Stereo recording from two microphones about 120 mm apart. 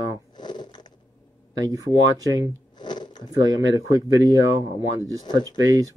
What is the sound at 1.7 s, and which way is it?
Speech, 30° right (ahead or behind).